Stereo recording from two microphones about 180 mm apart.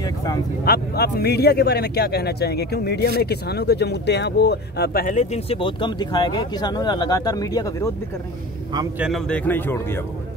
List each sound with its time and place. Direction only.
0.0 s speech: 20° left (ahead or behind)
0.7 s speech: 60° left (ahead or behind); by 7.9 s 20° left (ahead or behind)
8.9 s a man's voice: 5° right (ahead or behind)
9.3 s speech: 10° left (ahead or behind)